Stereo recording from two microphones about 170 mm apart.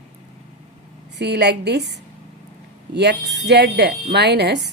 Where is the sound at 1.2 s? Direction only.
80° right.